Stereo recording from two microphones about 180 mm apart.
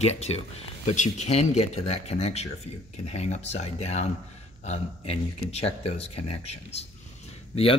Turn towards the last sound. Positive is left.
turn(degrees=30)  # may be behind; listen again after turning